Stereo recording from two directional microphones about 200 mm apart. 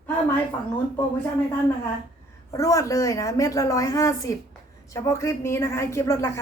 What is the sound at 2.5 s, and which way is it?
A woman's voice, 15° left (ahead or behind).